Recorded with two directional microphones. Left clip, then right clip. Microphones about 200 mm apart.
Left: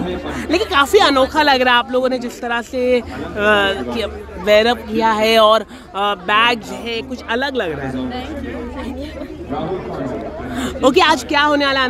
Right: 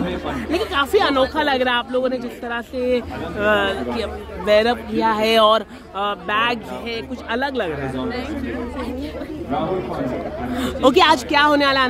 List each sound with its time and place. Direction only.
0.5 s speech: 20° left (ahead or behind)
10.5 s a woman's voice: 5° left (ahead or behind)